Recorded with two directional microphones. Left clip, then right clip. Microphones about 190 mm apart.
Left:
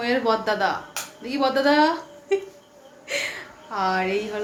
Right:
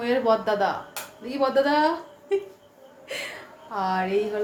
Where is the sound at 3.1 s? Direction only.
15° left (ahead or behind).